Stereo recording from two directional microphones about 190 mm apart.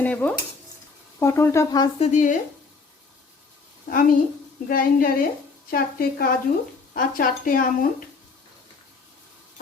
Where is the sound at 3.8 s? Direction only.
45° left (ahead or behind).